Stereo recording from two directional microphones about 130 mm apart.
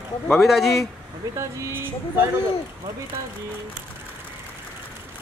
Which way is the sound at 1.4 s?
20° right (ahead or behind).